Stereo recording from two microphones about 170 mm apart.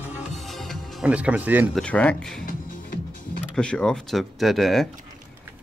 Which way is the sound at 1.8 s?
5° left (ahead or behind).